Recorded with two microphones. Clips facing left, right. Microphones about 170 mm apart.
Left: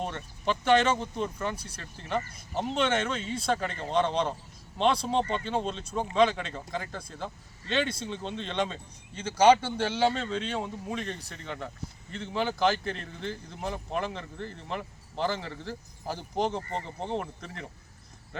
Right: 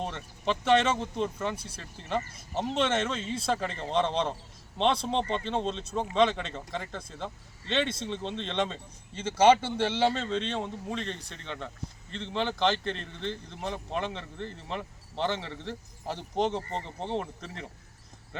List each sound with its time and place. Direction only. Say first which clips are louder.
0.0 s speech: left 1 dB; centre (ahead or behind)
16.6 s speech: even; 30° right (ahead or behind)
17.0 s speech: right 2 dB; centre (ahead or behind)